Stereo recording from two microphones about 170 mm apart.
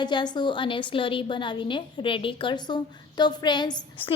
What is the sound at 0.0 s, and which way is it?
A woman's voice, 25° left (ahead or behind).